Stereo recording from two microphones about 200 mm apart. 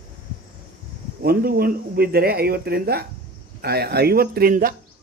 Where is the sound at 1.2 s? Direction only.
50° right (ahead or behind).